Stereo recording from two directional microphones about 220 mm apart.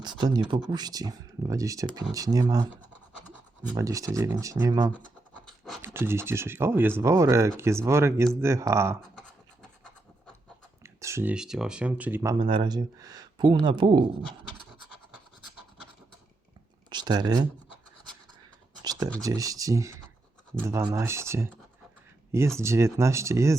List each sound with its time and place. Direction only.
0.0 s speech: 20° right (ahead or behind)
3.8 s speech: 15° right (ahead or behind)
5.3 s scratch: centre (ahead or behind)
5.8 s speech: 10° right (ahead or behind)
10.8 s speech: 10° right (ahead or behind)
16.9 s speech: 20° right (ahead or behind)
18.8 s a sound: 20° right (ahead or behind)
19.2 s speech: 15° right (ahead or behind)